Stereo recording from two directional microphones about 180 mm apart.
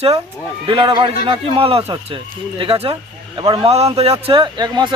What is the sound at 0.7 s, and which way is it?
A man's voice, 30° right (ahead or behind).